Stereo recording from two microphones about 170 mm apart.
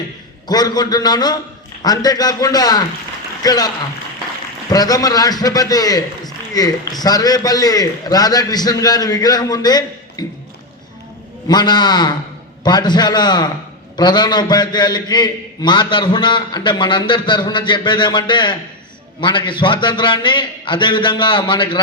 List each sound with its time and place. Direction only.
0.4 s a man's voice: 25° left (ahead or behind)
4.7 s a man's voice: 20° left (ahead or behind)
11.4 s a man's voice: 25° left (ahead or behind)